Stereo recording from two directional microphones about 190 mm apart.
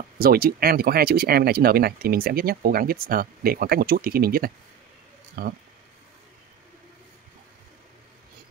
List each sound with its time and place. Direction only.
0.2 s speech: 50° right (ahead or behind)